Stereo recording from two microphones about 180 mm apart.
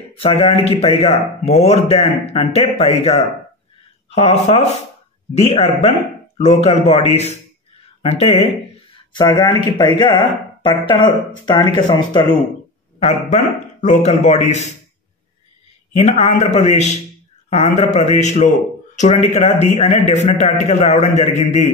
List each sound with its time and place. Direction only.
0.2 s speech: 30° left (ahead or behind)
9.1 s speech: 25° left (ahead or behind)
13.0 s speech: 40° left (ahead or behind)
16.0 s speech: 35° left (ahead or behind)